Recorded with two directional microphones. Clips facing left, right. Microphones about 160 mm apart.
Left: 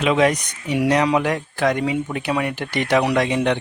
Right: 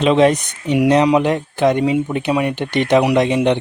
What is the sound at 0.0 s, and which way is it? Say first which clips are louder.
Speech: right 5 dB; 30° right (ahead or behind).